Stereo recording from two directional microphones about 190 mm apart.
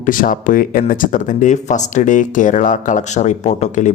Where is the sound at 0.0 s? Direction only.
45° left (ahead or behind).